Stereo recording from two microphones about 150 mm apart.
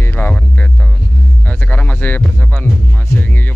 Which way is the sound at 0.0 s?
10° left (ahead or behind).